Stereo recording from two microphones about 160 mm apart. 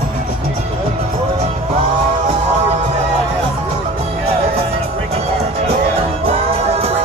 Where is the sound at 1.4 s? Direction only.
40° right (ahead or behind).